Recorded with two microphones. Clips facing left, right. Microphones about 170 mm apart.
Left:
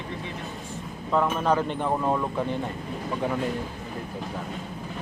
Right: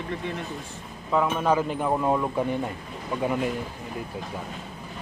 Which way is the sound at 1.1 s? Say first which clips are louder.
Even; centre (ahead or behind).